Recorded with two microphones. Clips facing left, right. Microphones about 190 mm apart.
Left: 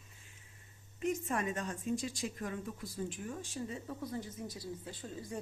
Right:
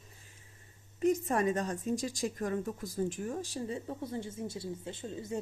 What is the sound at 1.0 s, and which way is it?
A woman's voice, 40° right (ahead or behind).